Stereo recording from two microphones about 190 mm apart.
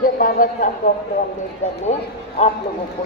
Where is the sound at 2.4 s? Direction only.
35° left (ahead or behind).